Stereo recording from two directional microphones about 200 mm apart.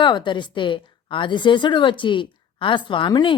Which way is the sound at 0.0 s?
25° left (ahead or behind).